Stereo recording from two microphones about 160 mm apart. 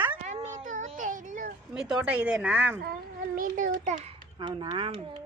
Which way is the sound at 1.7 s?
5° right (ahead or behind).